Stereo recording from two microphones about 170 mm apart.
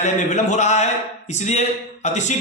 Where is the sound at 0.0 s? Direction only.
45° left (ahead or behind).